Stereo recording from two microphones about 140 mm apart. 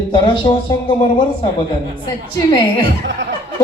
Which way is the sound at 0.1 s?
35° left (ahead or behind).